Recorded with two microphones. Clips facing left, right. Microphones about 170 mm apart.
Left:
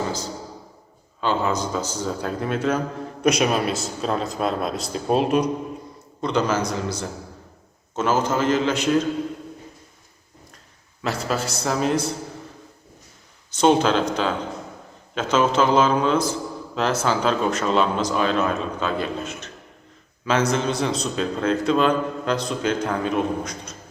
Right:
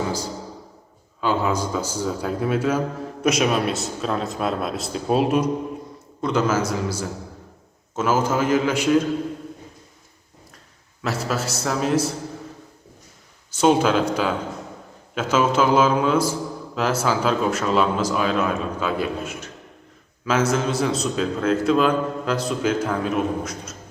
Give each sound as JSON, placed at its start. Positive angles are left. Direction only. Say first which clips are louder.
{"t": 1.2, "sound": "a man's voice", "louder": "right 1 dB", "side_deg": -10}
{"t": 11.0, "sound": "speech", "louder": "even", "side_deg": -5}
{"t": 13.5, "sound": "a man's voice", "louder": "even", "side_deg": -5}